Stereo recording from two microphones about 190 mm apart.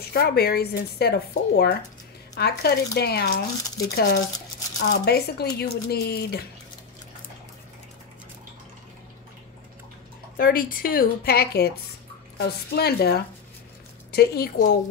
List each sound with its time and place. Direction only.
0.0 s speech: 55° left (ahead or behind)
10.3 s a woman's voice: 50° left (ahead or behind)